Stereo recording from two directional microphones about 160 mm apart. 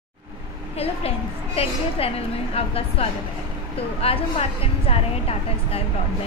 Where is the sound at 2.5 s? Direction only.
40° left (ahead or behind).